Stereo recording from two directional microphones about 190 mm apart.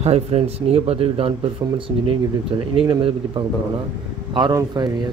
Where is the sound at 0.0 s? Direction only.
35° right (ahead or behind).